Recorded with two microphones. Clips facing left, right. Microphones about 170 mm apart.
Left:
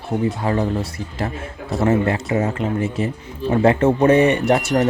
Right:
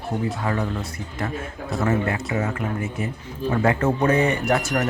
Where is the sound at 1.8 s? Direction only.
30° left (ahead or behind).